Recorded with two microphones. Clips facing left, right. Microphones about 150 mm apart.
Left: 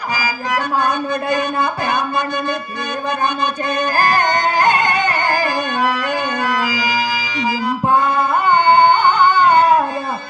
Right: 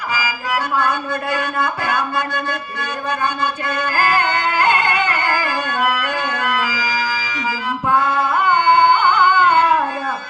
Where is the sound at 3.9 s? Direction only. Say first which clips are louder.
Left 1 dB; 35° left (ahead or behind).